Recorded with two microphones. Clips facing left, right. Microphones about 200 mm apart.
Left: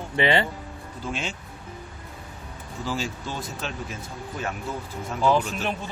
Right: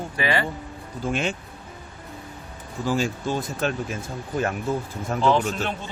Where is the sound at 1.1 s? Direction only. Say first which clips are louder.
Right 6 dB; 55° right (ahead or behind).